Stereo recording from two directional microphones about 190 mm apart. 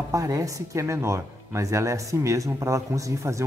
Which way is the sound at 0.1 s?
15° right (ahead or behind).